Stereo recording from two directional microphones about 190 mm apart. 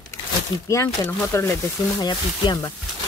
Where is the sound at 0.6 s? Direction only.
15° left (ahead or behind).